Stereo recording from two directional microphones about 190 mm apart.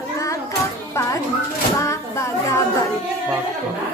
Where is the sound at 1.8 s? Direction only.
15° left (ahead or behind).